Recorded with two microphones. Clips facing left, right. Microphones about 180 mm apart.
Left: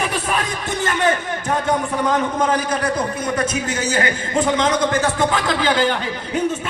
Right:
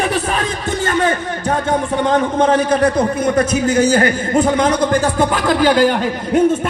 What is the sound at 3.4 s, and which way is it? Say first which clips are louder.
Speech: right 8 dB; 30° right (ahead or behind).